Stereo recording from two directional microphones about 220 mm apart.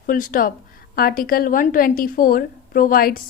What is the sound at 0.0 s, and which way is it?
A woman's voice, 40° left (ahead or behind).